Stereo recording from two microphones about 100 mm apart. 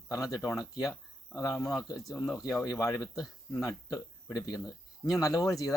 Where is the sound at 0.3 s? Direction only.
35° left (ahead or behind).